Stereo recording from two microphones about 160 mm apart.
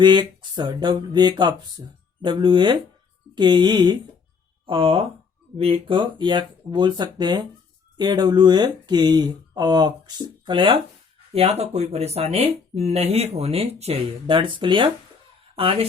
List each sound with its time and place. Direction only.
0.0 s speech: 30° right (ahead or behind)